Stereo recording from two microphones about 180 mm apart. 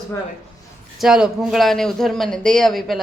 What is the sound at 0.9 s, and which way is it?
Speech, 5° right (ahead or behind).